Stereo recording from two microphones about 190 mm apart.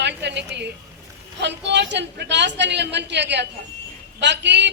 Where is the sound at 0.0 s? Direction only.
65° right (ahead or behind).